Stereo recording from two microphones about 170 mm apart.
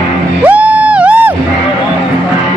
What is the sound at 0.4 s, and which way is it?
Music, 10° right (ahead or behind).